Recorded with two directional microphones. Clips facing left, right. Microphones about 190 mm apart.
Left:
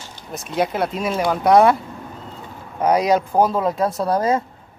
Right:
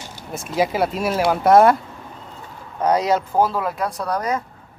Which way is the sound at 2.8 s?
10° left (ahead or behind).